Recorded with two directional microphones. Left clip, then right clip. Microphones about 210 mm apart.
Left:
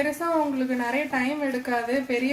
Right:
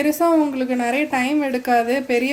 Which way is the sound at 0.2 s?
45° right (ahead or behind).